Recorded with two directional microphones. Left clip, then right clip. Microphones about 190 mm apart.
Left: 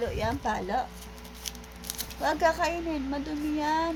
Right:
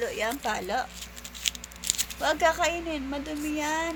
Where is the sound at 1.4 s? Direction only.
20° left (ahead or behind).